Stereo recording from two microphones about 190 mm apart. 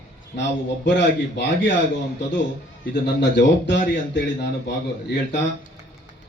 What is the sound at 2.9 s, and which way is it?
Speech, 65° left (ahead or behind).